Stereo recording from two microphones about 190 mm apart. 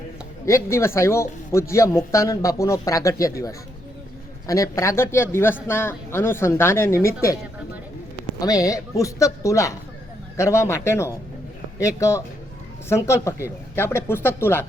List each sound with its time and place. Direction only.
0.4 s speech: 15° left (ahead or behind)
8.4 s speech: 20° left (ahead or behind)